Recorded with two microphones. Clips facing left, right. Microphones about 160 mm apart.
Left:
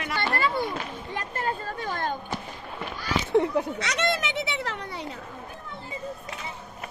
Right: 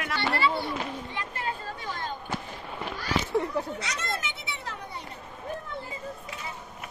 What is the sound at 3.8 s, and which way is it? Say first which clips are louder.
Children playing: left 7 dB; 85° left.